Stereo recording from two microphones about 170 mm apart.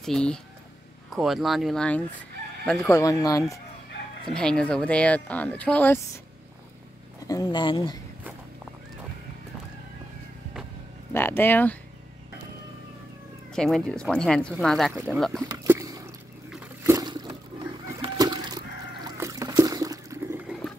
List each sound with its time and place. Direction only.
0.0 s speech: 5° left (ahead or behind)
2.6 s chicken: 5° left (ahead or behind)
2.9 s speech: 20° left (ahead or behind)
4.3 s speech: 5° left (ahead or behind)
7.2 s speech: 20° left (ahead or behind)
11.1 s speech: 15° left (ahead or behind)
13.5 s speech: 5° left (ahead or behind)
15.4 s a sound: 15° right (ahead or behind)
18.0 s chicken: 25° right (ahead or behind)
19.0 s a sound: 20° right (ahead or behind)